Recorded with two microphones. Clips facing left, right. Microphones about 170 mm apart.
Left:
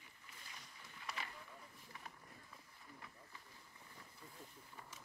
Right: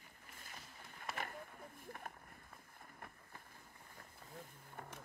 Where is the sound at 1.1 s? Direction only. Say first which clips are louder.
Right 4 dB; 50° right (ahead or behind).